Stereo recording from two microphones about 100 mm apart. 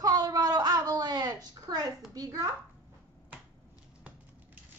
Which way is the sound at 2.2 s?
35° right (ahead or behind).